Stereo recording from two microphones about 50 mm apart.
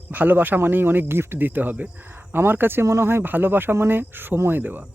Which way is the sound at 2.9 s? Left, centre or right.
Right.